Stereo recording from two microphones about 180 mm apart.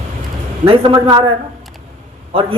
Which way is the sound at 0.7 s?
30° right (ahead or behind).